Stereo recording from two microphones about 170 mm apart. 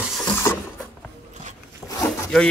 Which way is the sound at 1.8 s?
20° left (ahead or behind).